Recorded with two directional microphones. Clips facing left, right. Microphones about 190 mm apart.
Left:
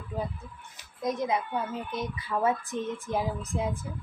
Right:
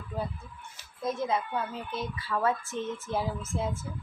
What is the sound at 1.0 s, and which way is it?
A woman's voice, 15° left (ahead or behind).